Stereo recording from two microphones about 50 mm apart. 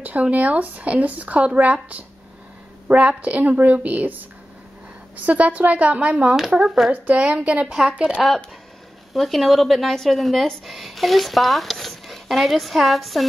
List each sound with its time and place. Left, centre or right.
0.0 s a woman's voice: right
6.5 s speech: centre
6.9 s a woman's voice: right
7.6 s speech: centre
7.9 s a woman's voice: right
9.1 s speech: centre